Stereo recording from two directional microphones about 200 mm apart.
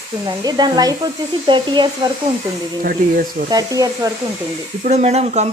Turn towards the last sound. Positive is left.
turn(degrees=-35)  # may be behind; listen again after turning